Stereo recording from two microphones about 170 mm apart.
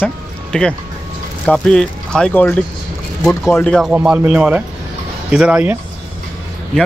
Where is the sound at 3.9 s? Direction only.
10° right (ahead or behind).